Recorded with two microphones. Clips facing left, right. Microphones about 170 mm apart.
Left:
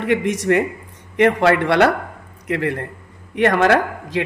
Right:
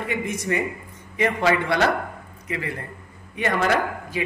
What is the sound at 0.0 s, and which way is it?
Speech, 80° left.